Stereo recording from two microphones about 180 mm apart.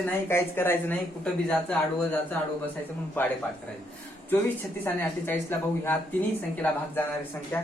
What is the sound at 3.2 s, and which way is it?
Speech, 10° left (ahead or behind).